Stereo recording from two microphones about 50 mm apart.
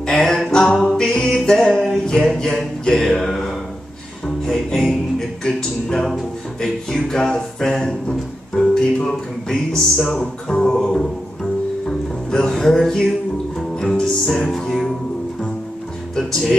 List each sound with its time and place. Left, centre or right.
0.2 s a sound: centre
0.5 s a capella: centre
0.8 s music: centre
1.3 s a sound: centre
4.5 s music: centre
5.4 s a sound: centre
10.0 s speech: centre
12.3 s music: centre
16.2 s music: centre